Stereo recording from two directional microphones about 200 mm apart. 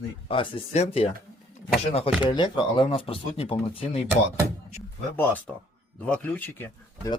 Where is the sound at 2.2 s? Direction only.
25° left (ahead or behind).